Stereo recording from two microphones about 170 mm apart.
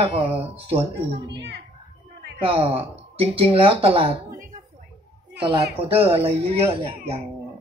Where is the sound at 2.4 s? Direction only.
35° right (ahead or behind).